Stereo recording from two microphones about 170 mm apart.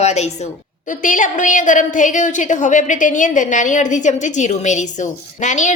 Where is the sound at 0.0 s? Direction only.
40° left (ahead or behind).